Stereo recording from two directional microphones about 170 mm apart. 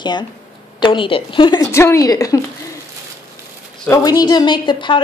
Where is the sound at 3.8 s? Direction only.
20° left (ahead or behind).